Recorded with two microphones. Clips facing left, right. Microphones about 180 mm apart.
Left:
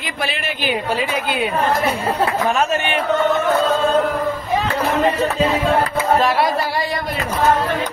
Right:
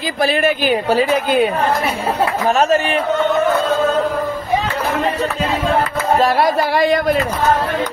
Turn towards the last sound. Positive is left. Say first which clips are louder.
# right 3 dB
turn(degrees=-45)  # may be behind; listen again after turning